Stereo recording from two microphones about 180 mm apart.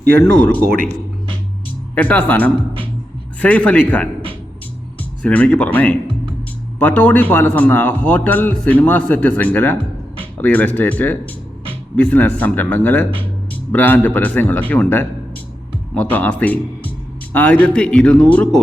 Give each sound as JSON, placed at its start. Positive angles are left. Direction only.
{"t": 0.3, "sound": "speech", "side_deg": -90}
{"t": 0.6, "sound": "speech", "side_deg": -55}
{"t": 2.0, "sound": "a man's voice", "side_deg": 10}
{"t": 2.6, "sound": "speech", "side_deg": -30}
{"t": 3.4, "sound": "a man's voice", "side_deg": 10}
{"t": 5.2, "sound": "a man's voice", "side_deg": 10}